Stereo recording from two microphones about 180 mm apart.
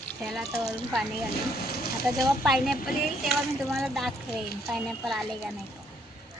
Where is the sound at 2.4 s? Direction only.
Centre (ahead or behind).